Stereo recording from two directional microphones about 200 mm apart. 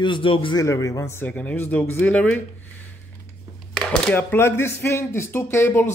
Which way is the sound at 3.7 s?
5° left (ahead or behind).